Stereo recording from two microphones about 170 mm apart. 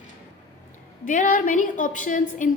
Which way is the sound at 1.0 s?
50° left (ahead or behind).